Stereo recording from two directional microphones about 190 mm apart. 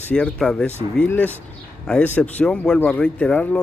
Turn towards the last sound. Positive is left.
turn(degrees=5)  # may be behind; listen again after turning